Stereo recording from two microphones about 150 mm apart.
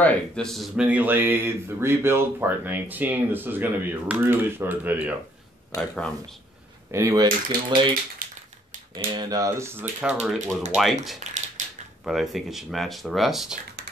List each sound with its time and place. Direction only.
0.0 s speech: 5° left (ahead or behind)
0.8 s speech: 10° right (ahead or behind)
5.8 s speech: 5° left (ahead or behind)
6.9 s speech: 20° right (ahead or behind)
8.2 s a sound: 70° right (ahead or behind)
8.9 s speech: 30° right (ahead or behind)
10.2 s speech: centre (ahead or behind)
11.1 s a sound: 50° right (ahead or behind)
12.0 s speech: centre (ahead or behind)